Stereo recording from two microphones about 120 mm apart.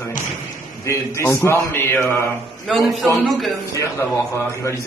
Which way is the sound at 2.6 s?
Centre (ahead or behind).